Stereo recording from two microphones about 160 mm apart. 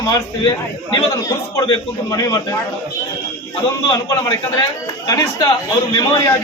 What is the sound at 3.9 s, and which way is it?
A man's voice, 20° left (ahead or behind).